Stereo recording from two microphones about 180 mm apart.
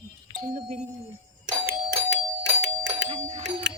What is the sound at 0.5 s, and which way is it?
Speech, 40° right (ahead or behind).